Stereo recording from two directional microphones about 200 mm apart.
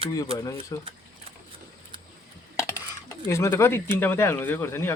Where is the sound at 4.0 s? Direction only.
10° left (ahead or behind).